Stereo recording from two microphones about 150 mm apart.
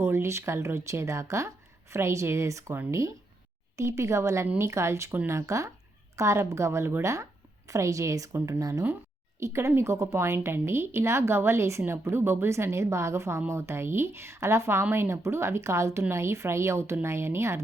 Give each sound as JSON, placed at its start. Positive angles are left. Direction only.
{"t": 0.0, "sound": "speech", "side_deg": -15}